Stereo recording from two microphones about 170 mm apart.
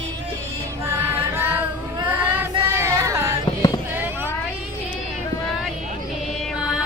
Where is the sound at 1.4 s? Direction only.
10° right (ahead or behind).